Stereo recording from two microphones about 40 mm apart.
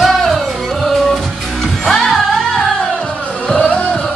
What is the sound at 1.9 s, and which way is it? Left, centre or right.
Music, centre.